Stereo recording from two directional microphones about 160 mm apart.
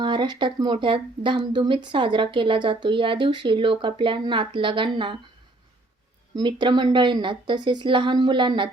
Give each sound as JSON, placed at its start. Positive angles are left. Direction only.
{"t": 0.0, "sound": "speech", "side_deg": -30}
{"t": 6.3, "sound": "a woman's voice", "side_deg": -30}